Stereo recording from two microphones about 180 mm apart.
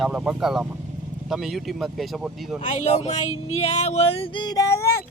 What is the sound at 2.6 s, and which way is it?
Speech, 40° left (ahead or behind).